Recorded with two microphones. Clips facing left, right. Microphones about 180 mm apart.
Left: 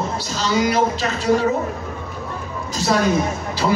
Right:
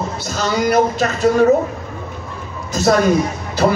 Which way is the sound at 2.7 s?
50° right (ahead or behind).